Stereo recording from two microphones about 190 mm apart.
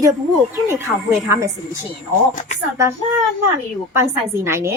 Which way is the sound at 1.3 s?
15° right (ahead or behind).